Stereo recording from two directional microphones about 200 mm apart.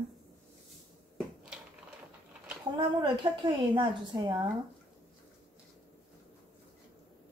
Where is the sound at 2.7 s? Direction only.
20° right (ahead or behind).